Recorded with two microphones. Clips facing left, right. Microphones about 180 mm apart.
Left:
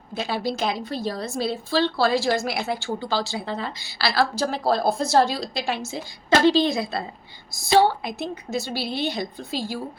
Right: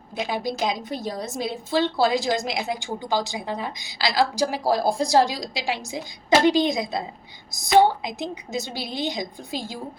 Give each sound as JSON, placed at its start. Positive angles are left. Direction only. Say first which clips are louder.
{"t": 0.1, "sound": "a woman's voice", "louder": "left 1 dB", "side_deg": -15}